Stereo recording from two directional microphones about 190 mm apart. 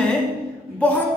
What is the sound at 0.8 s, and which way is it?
Speech, 5° left (ahead or behind).